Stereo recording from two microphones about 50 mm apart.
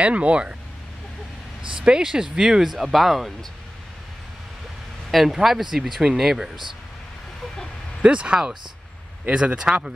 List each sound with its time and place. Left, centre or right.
0.0 s speech: right
1.8 s speech: centre
5.1 s speech: centre
8.0 s speech: right